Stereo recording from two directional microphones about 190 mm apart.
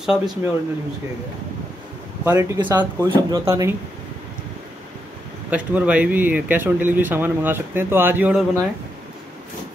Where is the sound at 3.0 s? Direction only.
20° right (ahead or behind).